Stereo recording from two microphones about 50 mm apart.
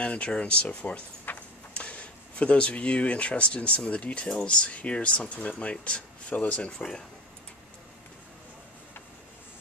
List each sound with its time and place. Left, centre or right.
0.0 s speech: left
1.2 s a sound: left
1.8 s speech: left